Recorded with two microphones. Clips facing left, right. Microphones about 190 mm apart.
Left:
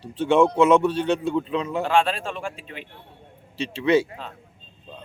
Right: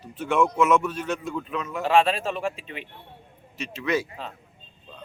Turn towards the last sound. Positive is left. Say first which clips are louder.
# left 6 dB
turn(degrees=30)  # may be behind; listen again after turning